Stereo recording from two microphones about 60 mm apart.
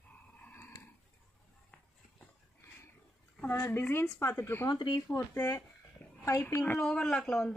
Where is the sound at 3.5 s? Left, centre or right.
Left.